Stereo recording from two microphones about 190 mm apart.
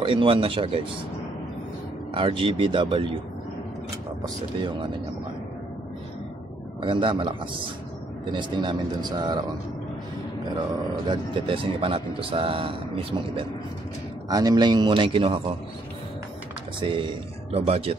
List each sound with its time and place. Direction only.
0.0 s speech: 30° right (ahead or behind)
2.1 s speech: 25° right (ahead or behind)
6.8 s speech: 25° right (ahead or behind)
11.1 s speech: 30° right (ahead or behind)
16.8 s speech: 25° right (ahead or behind)